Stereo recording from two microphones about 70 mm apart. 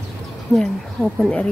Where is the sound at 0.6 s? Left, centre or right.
Centre.